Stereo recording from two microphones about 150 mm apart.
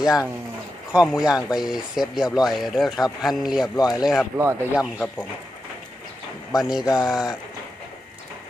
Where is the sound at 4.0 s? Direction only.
Centre (ahead or behind).